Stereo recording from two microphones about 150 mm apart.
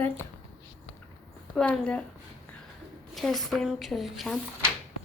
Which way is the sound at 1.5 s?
5° left (ahead or behind).